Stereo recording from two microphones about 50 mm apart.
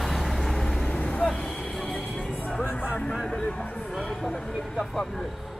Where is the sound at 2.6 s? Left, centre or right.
Left.